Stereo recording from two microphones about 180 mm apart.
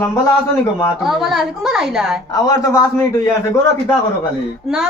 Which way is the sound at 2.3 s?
20° left (ahead or behind).